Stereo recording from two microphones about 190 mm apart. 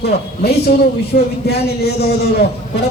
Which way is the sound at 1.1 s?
55° left (ahead or behind).